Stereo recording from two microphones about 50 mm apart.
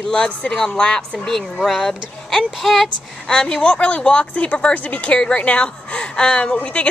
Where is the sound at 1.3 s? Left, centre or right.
Centre.